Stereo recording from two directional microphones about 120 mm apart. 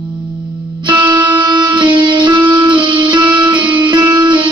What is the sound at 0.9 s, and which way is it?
Music, 40° right (ahead or behind).